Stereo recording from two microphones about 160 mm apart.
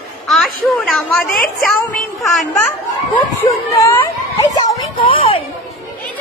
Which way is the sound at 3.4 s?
15° left (ahead or behind).